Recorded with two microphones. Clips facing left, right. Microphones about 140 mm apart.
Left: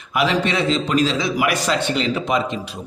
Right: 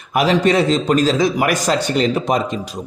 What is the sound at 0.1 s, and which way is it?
A man's voice, 40° right (ahead or behind).